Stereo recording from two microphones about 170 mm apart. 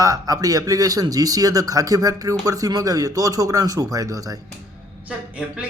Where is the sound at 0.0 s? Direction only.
20° right (ahead or behind).